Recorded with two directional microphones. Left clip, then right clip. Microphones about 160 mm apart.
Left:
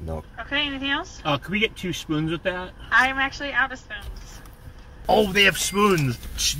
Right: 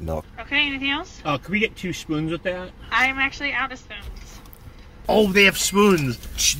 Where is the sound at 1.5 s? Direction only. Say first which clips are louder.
Right 1 dB; 30° right (ahead or behind).